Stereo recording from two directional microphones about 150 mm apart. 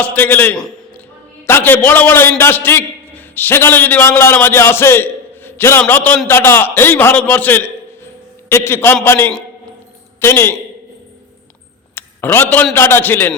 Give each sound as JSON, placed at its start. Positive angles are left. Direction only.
{"t": 0.0, "sound": "a man's voice", "side_deg": 10}
{"t": 11.9, "sound": "a sound", "side_deg": 15}
{"t": 12.7, "sound": "a man's voice", "side_deg": 15}